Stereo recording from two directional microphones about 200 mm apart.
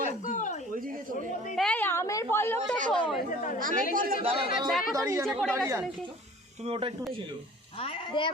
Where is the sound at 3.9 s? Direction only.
45° right (ahead or behind).